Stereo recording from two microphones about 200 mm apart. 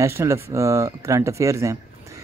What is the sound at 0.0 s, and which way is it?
Speech, 15° right (ahead or behind).